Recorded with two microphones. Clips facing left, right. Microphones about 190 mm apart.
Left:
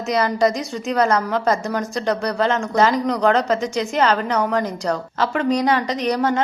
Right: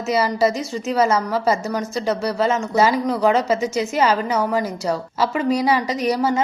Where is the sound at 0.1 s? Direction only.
5° right (ahead or behind).